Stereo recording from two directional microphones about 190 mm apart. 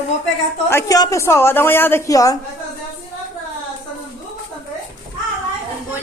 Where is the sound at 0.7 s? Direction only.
20° left (ahead or behind).